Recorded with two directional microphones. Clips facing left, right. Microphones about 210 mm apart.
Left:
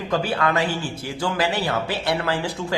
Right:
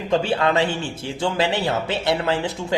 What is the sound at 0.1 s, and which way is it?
A man's voice, 25° right (ahead or behind).